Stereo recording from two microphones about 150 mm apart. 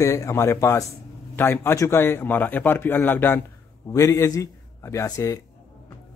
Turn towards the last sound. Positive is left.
turn(degrees=25)  # may be behind; listen again after turning